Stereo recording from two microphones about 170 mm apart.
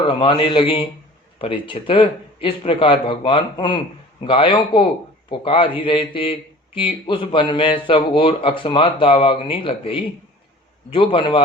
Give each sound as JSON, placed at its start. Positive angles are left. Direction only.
{"t": 0.1, "sound": "a man's voice", "side_deg": 30}